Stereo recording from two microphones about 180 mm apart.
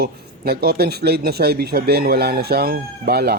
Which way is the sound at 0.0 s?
60° right (ahead or behind).